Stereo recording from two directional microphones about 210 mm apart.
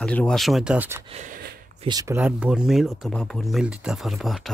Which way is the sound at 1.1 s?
40° right (ahead or behind).